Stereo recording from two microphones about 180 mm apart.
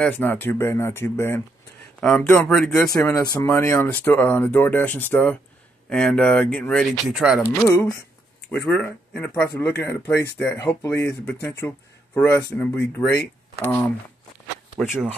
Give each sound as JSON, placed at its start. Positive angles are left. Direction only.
{"t": 0.0, "sound": "speech", "side_deg": 10}
{"t": 2.7, "sound": "speech", "side_deg": 15}
{"t": 7.4, "sound": "speech", "side_deg": 10}